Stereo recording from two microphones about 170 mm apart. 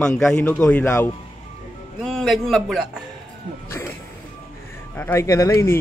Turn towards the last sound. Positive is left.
turn(degrees=15)  # may be behind; listen again after turning